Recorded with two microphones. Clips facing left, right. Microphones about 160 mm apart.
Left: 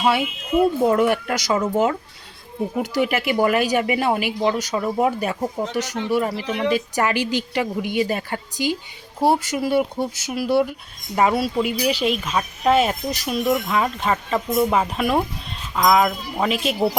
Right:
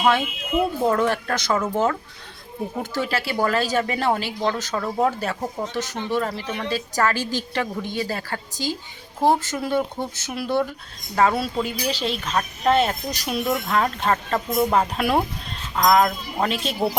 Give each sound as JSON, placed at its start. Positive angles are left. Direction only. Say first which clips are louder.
{"t": 0.0, "sound": "speech", "louder": "even", "side_deg": 10}